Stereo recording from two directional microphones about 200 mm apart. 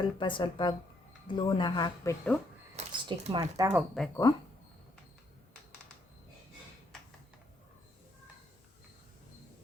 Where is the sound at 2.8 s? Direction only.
25° right (ahead or behind).